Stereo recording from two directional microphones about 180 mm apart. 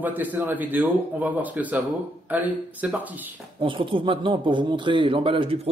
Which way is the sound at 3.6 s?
30° right (ahead or behind).